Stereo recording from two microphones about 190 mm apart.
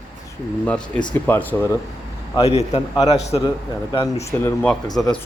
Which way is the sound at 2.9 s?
20° left (ahead or behind).